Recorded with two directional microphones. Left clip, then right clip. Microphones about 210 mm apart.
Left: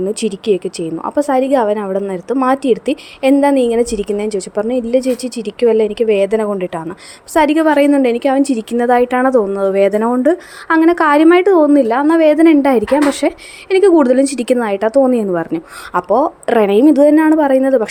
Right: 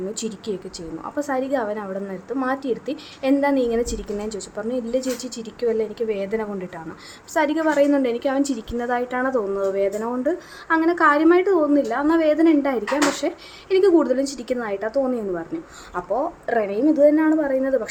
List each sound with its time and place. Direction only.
0.1 s a woman's voice: 30° left (ahead or behind)